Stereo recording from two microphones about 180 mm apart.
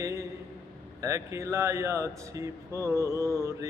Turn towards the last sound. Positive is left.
turn(degrees=-15)  # may be behind; listen again after turning